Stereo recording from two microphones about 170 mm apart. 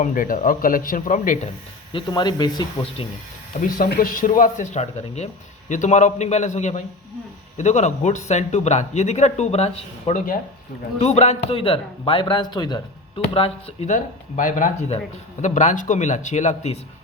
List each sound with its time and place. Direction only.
0.0 s speech: 55° left (ahead or behind)
1.9 s speech: 30° left (ahead or behind)
3.6 s speech: 60° left (ahead or behind); by 13.9 s 35° left (ahead or behind)
13.9 s speech: 50° left (ahead or behind)